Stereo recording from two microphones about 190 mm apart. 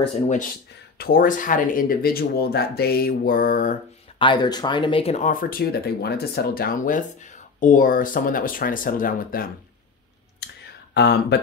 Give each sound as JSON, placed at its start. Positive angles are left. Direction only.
{"t": 0.9, "sound": "speech", "side_deg": 50}
{"t": 4.2, "sound": "speech", "side_deg": 25}
{"t": 11.0, "sound": "speech", "side_deg": 60}